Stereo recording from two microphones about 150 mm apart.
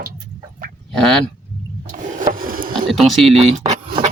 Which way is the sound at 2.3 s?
65° right (ahead or behind).